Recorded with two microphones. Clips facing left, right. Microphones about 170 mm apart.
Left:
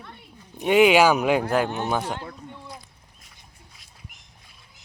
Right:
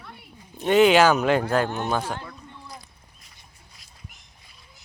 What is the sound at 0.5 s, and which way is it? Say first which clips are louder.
Speech: even; 10° left (ahead or behind).